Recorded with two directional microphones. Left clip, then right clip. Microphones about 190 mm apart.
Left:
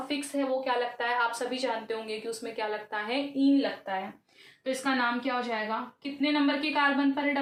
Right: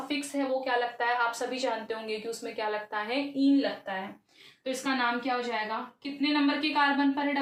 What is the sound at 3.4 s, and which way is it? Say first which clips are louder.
A woman's voice: even; 20° left (ahead or behind).